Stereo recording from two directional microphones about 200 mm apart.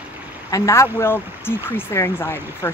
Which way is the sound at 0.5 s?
15° left (ahead or behind).